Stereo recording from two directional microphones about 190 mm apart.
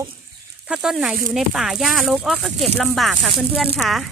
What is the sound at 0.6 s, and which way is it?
Speech, 5° right (ahead or behind).